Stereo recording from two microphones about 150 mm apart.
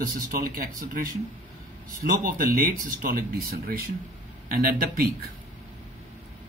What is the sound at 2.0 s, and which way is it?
Speech, 70° right (ahead or behind).